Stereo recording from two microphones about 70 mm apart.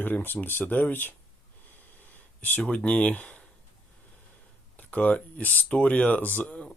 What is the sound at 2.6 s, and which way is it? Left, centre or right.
Speech, centre.